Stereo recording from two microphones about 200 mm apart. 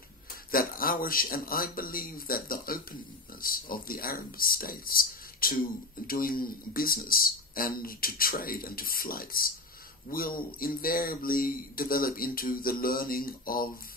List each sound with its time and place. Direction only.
0.5 s a man's voice: 45° left (ahead or behind)